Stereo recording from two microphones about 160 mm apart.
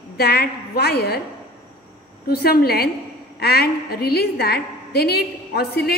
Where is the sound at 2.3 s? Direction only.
75° left (ahead or behind).